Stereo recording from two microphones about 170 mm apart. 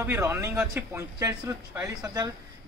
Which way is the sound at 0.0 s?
15° right (ahead or behind).